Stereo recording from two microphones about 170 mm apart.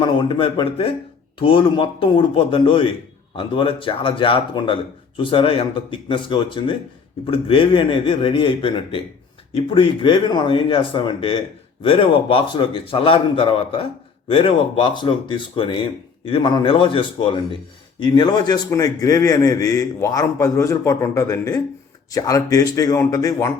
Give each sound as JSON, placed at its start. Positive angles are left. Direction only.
{"t": 0.0, "sound": "a man's voice", "side_deg": 30}